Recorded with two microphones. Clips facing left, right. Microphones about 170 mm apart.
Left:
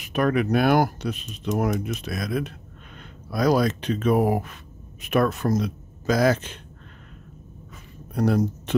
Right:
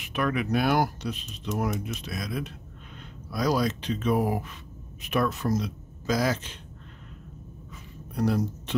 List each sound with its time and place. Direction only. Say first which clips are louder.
0.0 s speech: left 6 dB; 40° left (ahead or behind)
8.1 s speech: left 4 dB; 50° left (ahead or behind)